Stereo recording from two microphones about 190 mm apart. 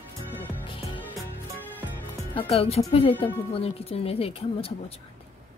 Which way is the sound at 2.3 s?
30° left (ahead or behind).